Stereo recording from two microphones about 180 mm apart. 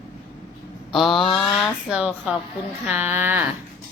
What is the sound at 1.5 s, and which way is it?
A woman's voice, centre (ahead or behind).